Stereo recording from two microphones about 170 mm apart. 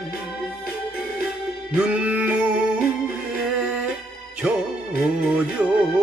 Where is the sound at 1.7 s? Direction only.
5° right (ahead or behind).